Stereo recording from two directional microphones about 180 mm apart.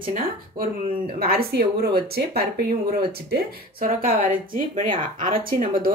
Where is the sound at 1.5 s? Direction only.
60° right (ahead or behind).